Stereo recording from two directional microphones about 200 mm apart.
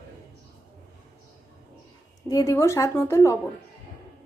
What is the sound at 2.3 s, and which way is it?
A woman's voice, 15° left (ahead or behind).